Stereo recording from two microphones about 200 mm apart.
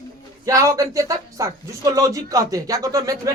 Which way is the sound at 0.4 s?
15° right (ahead or behind).